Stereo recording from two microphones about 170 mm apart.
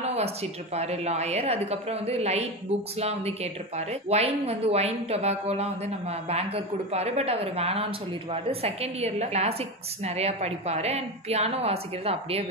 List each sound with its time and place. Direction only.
0.1 s speech: 40° right (ahead or behind)